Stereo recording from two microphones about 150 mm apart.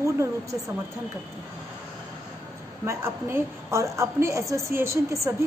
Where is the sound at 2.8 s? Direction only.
15° right (ahead or behind).